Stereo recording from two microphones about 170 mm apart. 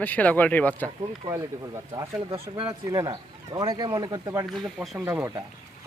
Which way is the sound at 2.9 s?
20° right (ahead or behind).